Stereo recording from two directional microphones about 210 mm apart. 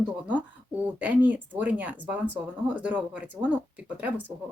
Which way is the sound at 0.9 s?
5° right (ahead or behind).